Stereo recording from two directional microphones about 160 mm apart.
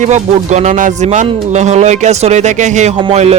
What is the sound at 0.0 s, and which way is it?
Speech, 45° right (ahead or behind).